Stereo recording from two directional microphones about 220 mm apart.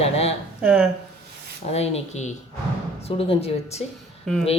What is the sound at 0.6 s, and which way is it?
Speech, 5° right (ahead or behind).